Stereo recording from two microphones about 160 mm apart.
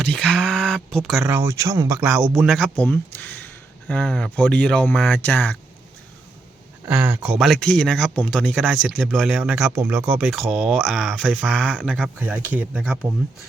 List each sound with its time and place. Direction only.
0.0 s speech: 5° left (ahead or behind)
1.3 s speech: 15° right (ahead or behind)
2.0 s speech: 5° right (ahead or behind); by 5.5 s 10° left (ahead or behind)
6.8 s speech: 10° right (ahead or behind); by 11.7 s 5° left (ahead or behind)
11.7 s speech: 10° right (ahead or behind)